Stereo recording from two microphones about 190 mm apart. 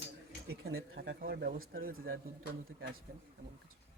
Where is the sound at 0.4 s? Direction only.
55° right (ahead or behind).